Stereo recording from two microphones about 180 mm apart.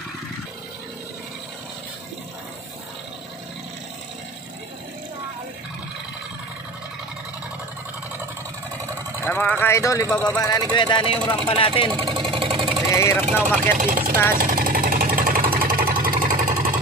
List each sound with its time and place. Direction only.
9.2 s speech: 10° left (ahead or behind); by 11.9 s 30° left (ahead or behind)
11.9 s vehicle: 25° right (ahead or behind)
12.9 s speech: 15° left (ahead or behind)
13.6 s speech: 45° right (ahead or behind)
14.3 s jackhammer: 50° right (ahead or behind)